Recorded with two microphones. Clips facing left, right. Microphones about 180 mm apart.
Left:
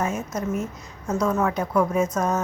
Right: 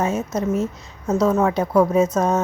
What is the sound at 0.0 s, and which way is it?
A woman's voice, 25° right (ahead or behind).